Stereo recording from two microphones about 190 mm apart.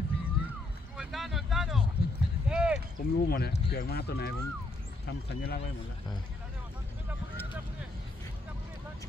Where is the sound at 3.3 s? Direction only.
55° left (ahead or behind).